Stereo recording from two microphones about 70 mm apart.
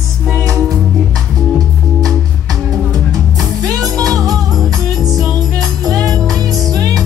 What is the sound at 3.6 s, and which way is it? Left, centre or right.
Music, right.